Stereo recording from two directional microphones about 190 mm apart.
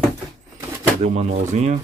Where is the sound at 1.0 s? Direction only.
35° right (ahead or behind).